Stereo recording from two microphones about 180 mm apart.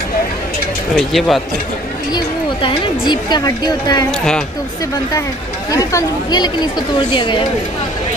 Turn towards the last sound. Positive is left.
turn(degrees=25)  # may be behind; listen again after turning